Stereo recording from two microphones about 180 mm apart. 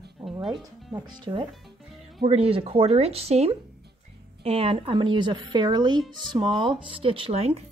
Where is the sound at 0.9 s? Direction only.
25° right (ahead or behind).